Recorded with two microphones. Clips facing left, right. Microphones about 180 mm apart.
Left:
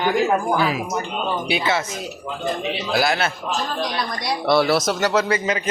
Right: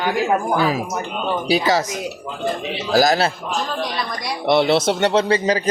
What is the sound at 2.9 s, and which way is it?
Speech, 40° right (ahead or behind).